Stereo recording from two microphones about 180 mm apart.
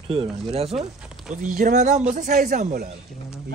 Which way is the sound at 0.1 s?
35° right (ahead or behind).